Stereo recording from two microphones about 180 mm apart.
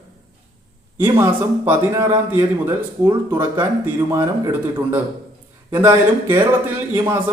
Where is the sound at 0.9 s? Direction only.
10° right (ahead or behind).